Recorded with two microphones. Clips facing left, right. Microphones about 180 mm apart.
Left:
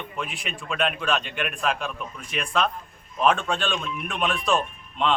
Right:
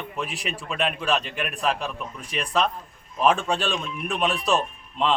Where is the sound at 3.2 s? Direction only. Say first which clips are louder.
Right 1 dB; 5° right (ahead or behind).